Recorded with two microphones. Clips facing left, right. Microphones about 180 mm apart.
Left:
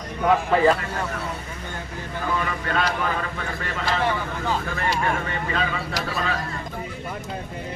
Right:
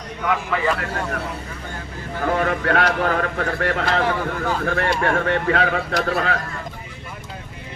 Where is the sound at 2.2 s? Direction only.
60° right (ahead or behind).